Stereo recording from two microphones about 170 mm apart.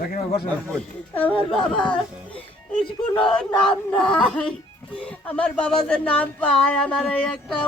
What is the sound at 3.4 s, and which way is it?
Child singing, 5° left (ahead or behind).